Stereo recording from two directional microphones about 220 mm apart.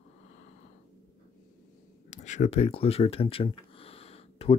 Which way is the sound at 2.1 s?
30° left (ahead or behind).